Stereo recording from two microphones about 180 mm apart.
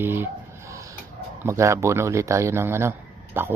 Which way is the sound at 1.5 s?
15° right (ahead or behind).